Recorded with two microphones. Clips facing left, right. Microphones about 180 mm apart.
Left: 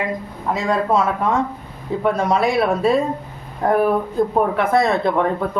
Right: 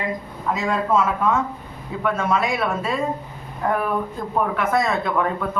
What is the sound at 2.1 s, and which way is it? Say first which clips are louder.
Speech: left 4 dB; 35° left (ahead or behind).